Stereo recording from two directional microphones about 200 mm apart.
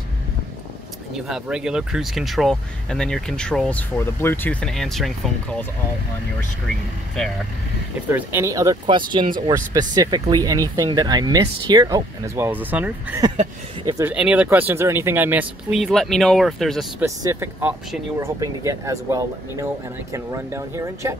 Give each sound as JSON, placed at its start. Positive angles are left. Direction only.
{"t": 1.1, "sound": "speech", "side_deg": 0}
{"t": 8.1, "sound": "speech", "side_deg": -10}
{"t": 17.0, "sound": "speech", "side_deg": -15}